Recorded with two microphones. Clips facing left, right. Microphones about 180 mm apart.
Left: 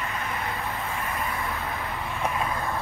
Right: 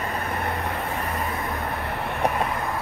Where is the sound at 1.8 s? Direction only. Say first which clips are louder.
Right 5 dB; 65° right (ahead or behind).